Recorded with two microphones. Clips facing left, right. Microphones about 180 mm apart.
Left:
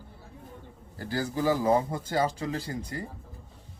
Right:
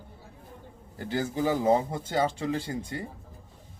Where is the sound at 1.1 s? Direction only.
20° right (ahead or behind).